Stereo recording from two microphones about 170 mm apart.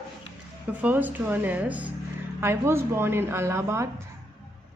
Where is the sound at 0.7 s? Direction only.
10° right (ahead or behind).